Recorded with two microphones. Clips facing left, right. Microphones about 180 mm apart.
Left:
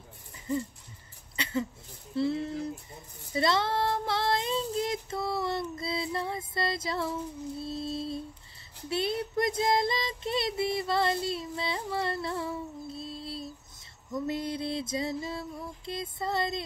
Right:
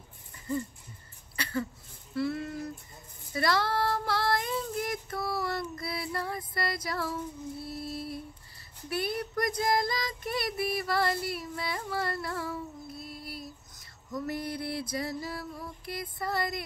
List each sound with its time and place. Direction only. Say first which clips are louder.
1.3 s a sound: left 1 dB; 20° left (ahead or behind)
2.1 s speech: left 3 dB; 25° left (ahead or behind)
3.3 s child singing: left 1 dB; 20° left (ahead or behind)
14.1 s music: left 2 dB; 20° left (ahead or behind)